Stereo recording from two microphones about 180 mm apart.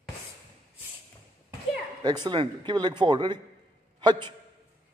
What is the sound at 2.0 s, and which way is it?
A man's voice, 25° right (ahead or behind).